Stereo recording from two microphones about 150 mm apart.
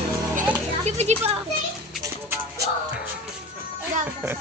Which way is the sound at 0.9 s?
50° right (ahead or behind).